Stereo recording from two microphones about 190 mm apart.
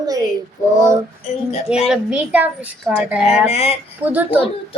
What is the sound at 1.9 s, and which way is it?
A woman's voice, 5° right (ahead or behind).